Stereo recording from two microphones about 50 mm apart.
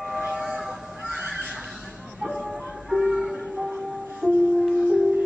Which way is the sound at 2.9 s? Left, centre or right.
Centre.